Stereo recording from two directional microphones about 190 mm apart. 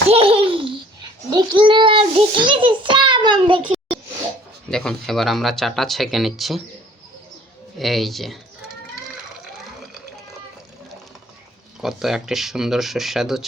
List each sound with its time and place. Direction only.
0.1 s laughter: 30° right (ahead or behind)
1.3 s a child's voice: 20° right (ahead or behind)
4.7 s speech: 5° left (ahead or behind)
7.8 s speech: centre (ahead or behind)
11.8 s speech: centre (ahead or behind)